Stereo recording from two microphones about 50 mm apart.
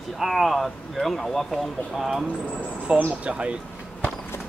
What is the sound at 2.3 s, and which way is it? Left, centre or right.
Speech, right.